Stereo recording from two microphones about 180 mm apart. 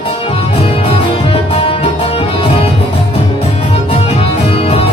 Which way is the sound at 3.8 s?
30° left (ahead or behind).